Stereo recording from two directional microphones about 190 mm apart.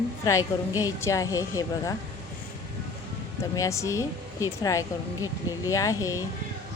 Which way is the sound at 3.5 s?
15° left (ahead or behind).